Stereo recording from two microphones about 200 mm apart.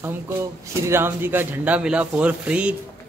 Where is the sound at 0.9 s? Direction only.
10° right (ahead or behind).